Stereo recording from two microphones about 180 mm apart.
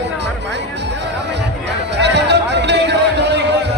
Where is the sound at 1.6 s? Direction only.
70° right (ahead or behind).